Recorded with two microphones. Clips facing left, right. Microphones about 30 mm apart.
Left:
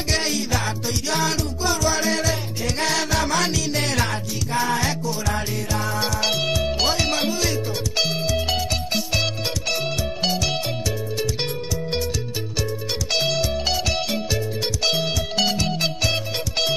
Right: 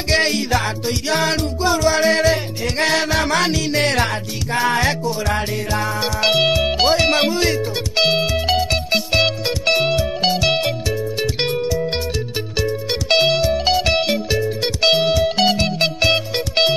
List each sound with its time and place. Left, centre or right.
0.1 s music: right
1.6 s music: right
1.9 s music: right
3.7 s music: right
5.9 s music: centre
6.2 s music: right
7.1 s music: right
8.0 s music: right
8.3 s music: right
9.8 s music: right
12.5 s music: right
13.4 s music: right
13.7 s music: right